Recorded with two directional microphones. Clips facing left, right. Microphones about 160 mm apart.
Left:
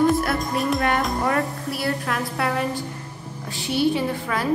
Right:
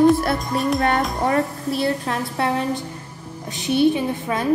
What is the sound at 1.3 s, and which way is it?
A woman's voice, 20° right (ahead or behind).